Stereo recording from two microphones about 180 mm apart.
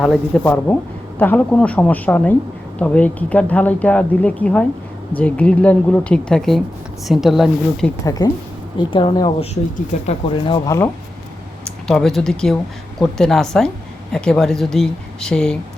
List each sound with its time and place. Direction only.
0.0 s speech: centre (ahead or behind)
0.4 s speech: 10° left (ahead or behind)
8.2 s speech: 20° left (ahead or behind)
11.9 s speech: 5° left (ahead or behind)